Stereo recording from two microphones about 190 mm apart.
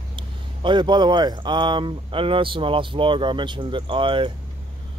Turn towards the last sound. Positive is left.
turn(degrees=-25)  # may be behind; listen again after turning